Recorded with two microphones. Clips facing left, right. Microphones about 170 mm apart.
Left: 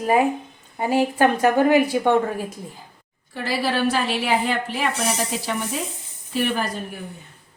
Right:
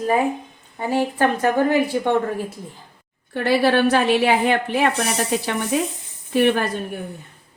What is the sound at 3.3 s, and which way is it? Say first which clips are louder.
Speech: right 6 dB; 60° right (ahead or behind).